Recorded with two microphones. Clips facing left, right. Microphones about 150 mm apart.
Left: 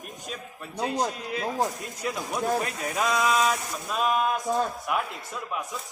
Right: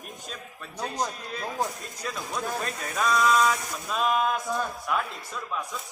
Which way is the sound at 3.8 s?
5° left (ahead or behind).